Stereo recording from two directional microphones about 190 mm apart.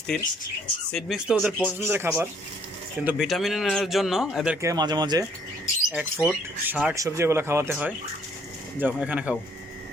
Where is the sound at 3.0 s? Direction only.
Centre (ahead or behind).